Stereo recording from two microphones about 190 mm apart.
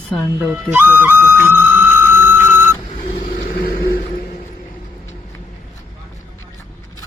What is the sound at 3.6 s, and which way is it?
Vehicle, 50° left (ahead or behind).